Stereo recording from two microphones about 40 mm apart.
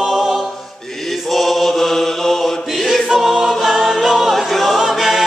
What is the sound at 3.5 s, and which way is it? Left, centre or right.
Choir, centre.